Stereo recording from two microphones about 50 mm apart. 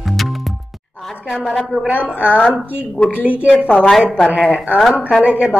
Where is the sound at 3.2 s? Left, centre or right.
Right.